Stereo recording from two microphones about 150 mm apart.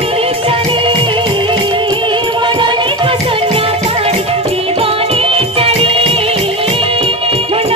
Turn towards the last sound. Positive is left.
turn(degrees=-40)  # may be behind; listen again after turning